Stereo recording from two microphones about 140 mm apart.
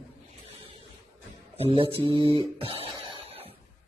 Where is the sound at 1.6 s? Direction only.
45° right (ahead or behind).